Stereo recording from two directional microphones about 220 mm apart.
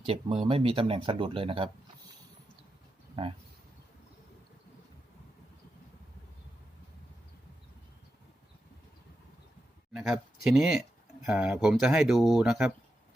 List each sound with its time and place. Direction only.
0.0 s speech: 25° right (ahead or behind)
9.9 s speech: 5° right (ahead or behind)